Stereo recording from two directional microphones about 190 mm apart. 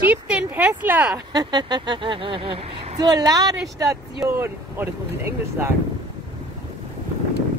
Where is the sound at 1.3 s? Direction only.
20° right (ahead or behind).